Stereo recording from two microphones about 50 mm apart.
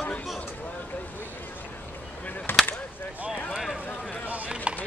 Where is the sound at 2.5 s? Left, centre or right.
Left.